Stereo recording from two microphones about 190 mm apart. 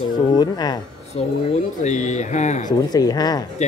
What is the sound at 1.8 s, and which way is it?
Speech, 40° left (ahead or behind).